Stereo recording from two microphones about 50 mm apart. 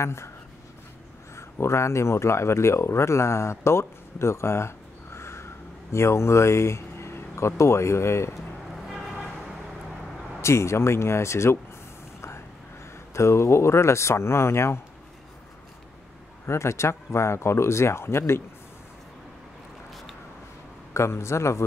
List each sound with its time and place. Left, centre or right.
0.0 s speech: left
1.3 s speech: left
10.4 s speech: left
13.1 s speech: left
16.4 s speech: left
20.9 s speech: left